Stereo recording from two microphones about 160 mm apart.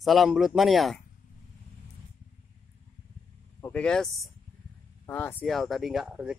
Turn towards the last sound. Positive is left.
turn(degrees=-5)  # may be behind; listen again after turning